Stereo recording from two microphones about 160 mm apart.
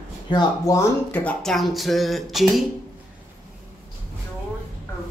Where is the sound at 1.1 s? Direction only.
10° left (ahead or behind).